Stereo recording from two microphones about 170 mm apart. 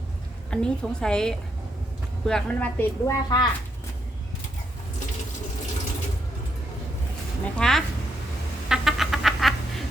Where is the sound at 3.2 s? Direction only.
25° left (ahead or behind).